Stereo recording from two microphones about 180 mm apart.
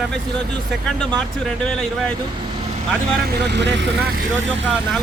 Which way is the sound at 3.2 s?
65° right (ahead or behind).